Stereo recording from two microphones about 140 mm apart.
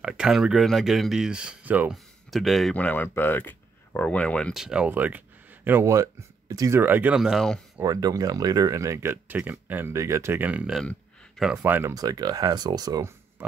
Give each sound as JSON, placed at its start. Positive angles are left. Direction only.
{"t": 0.0, "sound": "speech", "side_deg": -5}
{"t": 2.3, "sound": "speech", "side_deg": 0}
{"t": 4.6, "sound": "speech", "side_deg": -10}
{"t": 7.2, "sound": "speech", "side_deg": 0}
{"t": 7.7, "sound": "speech", "side_deg": -25}
{"t": 10.8, "sound": "a sound", "side_deg": 0}
{"t": 11.5, "sound": "speech", "side_deg": -15}
{"t": 11.9, "sound": "speech", "side_deg": -25}